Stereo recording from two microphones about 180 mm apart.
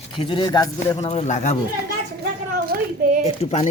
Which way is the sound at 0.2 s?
25° left (ahead or behind).